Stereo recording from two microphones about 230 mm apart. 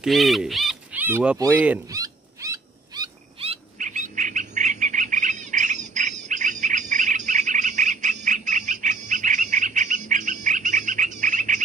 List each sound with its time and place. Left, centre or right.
0.0 s speech: centre
1.4 s owl: centre; by 11.6 s right